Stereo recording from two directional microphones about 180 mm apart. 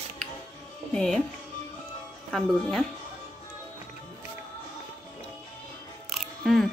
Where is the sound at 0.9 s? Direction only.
5° left (ahead or behind).